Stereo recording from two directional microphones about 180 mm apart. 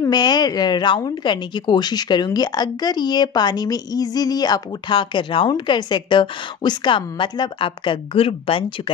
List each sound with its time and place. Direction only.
0.0 s speech: 20° left (ahead or behind)